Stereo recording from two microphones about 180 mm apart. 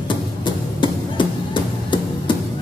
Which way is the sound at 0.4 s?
25° left (ahead or behind).